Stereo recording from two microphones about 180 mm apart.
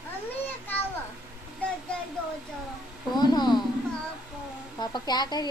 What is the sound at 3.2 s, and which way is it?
Speech, 25° left (ahead or behind).